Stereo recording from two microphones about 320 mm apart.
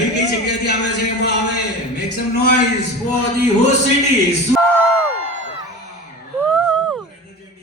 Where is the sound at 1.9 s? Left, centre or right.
Left.